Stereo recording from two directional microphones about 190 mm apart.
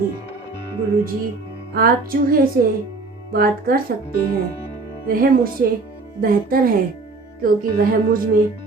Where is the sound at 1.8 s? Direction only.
50° right (ahead or behind).